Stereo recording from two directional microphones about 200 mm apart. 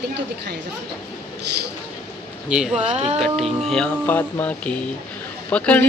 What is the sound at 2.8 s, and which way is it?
Speech, 35° right (ahead or behind).